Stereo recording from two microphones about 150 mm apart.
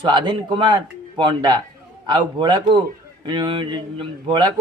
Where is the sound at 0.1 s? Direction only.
30° right (ahead or behind).